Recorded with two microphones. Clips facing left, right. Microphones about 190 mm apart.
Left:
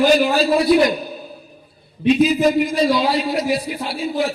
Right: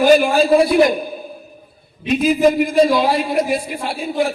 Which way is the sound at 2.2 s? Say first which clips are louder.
Right 4 dB; 50° right (ahead or behind).